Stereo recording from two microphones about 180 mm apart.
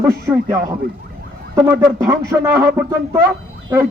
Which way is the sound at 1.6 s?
15° right (ahead or behind).